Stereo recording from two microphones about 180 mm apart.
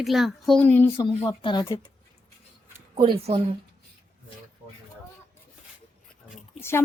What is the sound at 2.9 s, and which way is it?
Speech, 30° right (ahead or behind).